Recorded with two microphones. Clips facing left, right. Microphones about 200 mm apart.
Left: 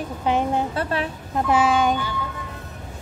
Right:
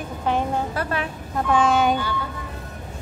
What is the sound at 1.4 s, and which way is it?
Speech, 5° left (ahead or behind).